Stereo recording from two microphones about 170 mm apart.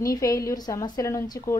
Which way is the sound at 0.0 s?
20° left (ahead or behind).